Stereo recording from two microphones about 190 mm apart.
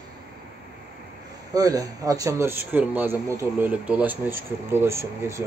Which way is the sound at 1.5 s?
20° right (ahead or behind).